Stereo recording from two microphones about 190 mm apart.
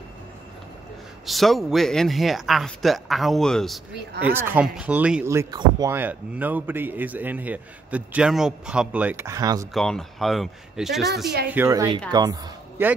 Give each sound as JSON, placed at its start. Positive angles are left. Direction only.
{"t": 1.2, "sound": "speech", "side_deg": 0}
{"t": 4.2, "sound": "speech", "side_deg": -10}
{"t": 9.8, "sound": "speech", "side_deg": 0}
{"t": 11.4, "sound": "a woman's voice", "side_deg": -10}